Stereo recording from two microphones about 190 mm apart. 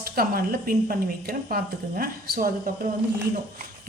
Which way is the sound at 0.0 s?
50° right (ahead or behind).